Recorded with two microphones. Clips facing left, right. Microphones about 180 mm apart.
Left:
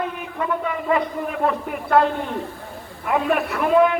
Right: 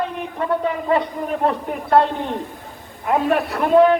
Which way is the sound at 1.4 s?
35° right (ahead or behind).